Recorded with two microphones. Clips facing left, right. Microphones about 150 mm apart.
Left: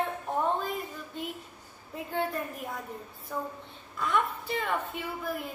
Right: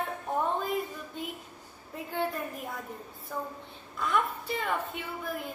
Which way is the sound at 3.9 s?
Centre (ahead or behind).